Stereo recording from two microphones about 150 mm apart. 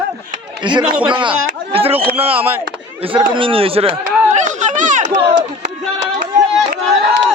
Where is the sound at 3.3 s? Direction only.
35° right (ahead or behind); by 5.1 s 55° right (ahead or behind).